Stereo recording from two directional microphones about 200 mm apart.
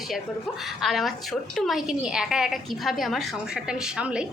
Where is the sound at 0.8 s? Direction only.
Centre (ahead or behind).